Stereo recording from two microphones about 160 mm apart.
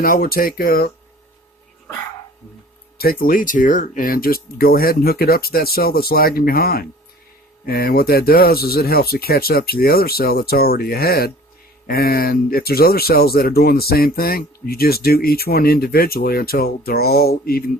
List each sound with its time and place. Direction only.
0.0 s speech: 65° left (ahead or behind)
3.0 s speech: 65° left (ahead or behind)